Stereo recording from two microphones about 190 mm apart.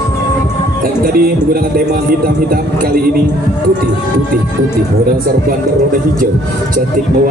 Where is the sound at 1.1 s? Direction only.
55° right (ahead or behind).